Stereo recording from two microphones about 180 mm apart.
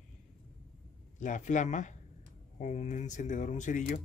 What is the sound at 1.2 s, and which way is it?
Speech, 45° left (ahead or behind).